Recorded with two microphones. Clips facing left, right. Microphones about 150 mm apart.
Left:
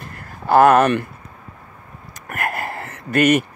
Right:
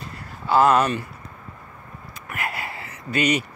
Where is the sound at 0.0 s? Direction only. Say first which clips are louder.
Left 3 dB; 55° left (ahead or behind).